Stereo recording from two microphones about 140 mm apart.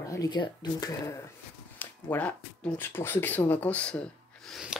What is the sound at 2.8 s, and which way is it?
Speech, 15° left (ahead or behind).